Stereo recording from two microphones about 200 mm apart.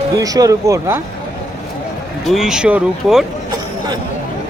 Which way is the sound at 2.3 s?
Centre (ahead or behind).